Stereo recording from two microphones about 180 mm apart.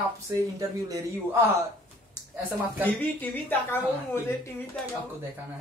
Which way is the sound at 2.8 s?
10° left (ahead or behind).